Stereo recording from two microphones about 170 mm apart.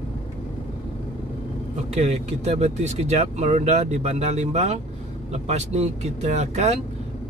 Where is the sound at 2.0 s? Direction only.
40° right (ahead or behind).